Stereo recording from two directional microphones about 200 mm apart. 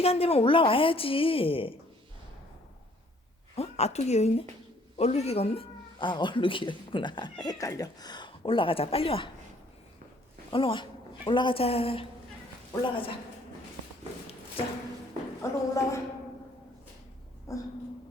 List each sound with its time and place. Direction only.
0.0 s speech: 30° left (ahead or behind)
3.5 s a woman's voice: 30° left (ahead or behind)
10.5 s speech: 25° left (ahead or behind)
15.4 s a woman's voice: 15° left (ahead or behind)
17.5 s a sound: 15° left (ahead or behind)